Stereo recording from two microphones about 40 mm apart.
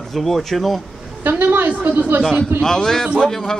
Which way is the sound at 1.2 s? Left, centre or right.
Right.